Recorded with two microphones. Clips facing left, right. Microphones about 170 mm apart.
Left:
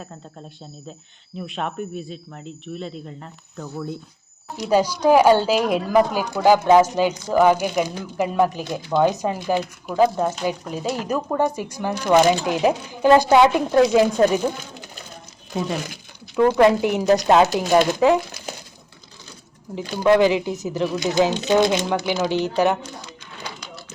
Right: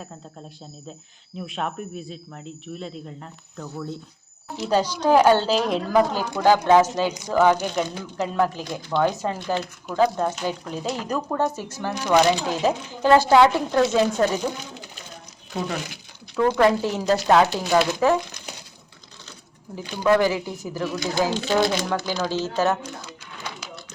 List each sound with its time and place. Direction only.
0.0 s speech: centre (ahead or behind)
16.6 s speech: 15° left (ahead or behind)
20.1 s speech: 20° left (ahead or behind)
23.6 s a sound: 5° right (ahead or behind)